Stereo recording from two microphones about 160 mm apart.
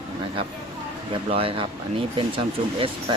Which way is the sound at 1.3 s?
35° right (ahead or behind).